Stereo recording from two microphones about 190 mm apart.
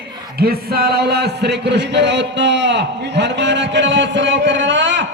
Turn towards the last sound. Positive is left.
turn(degrees=-75)  # may be behind; listen again after turning